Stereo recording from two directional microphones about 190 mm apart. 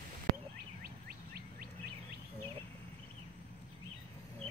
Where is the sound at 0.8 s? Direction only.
55° right (ahead or behind).